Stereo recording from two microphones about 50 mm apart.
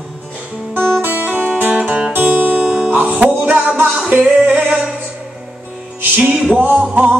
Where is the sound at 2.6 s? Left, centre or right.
Centre.